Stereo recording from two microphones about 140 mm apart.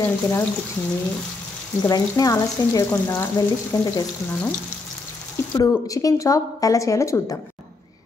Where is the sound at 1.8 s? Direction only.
25° left (ahead or behind).